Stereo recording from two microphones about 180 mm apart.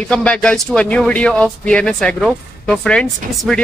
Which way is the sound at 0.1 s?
5° left (ahead or behind).